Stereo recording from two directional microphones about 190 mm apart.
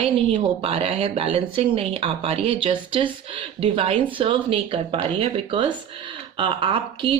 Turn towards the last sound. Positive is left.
turn(degrees=-25)  # may be behind; listen again after turning